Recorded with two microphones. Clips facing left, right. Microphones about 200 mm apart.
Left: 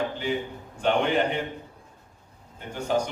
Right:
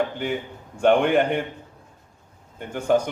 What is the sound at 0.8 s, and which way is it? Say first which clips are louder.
Speech: right 5 dB; 55° right (ahead or behind).